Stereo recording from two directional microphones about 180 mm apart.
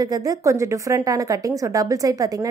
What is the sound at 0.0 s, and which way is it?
A woman's voice, 20° right (ahead or behind).